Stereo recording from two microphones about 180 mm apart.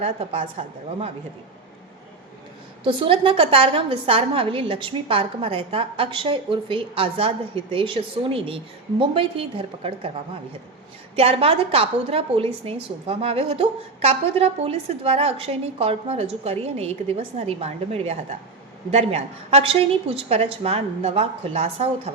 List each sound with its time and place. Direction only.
0.0 s a woman's voice: 35° right (ahead or behind)
2.8 s a woman's voice: 30° right (ahead or behind)
11.1 s a woman's voice: 30° right (ahead or behind)